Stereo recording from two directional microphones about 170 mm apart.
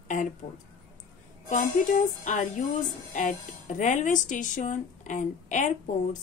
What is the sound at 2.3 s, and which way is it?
Speech, 45° left (ahead or behind).